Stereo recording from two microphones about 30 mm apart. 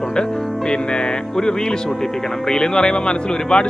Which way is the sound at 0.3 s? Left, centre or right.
Left.